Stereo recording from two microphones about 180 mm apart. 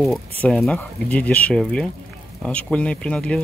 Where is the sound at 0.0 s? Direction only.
5° left (ahead or behind).